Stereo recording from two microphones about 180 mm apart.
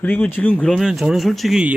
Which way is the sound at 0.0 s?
10° left (ahead or behind).